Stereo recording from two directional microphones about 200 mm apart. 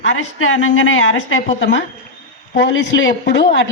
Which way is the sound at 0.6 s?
75° left (ahead or behind).